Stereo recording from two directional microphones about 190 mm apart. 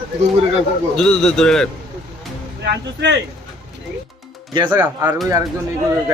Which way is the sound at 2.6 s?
65° right (ahead or behind).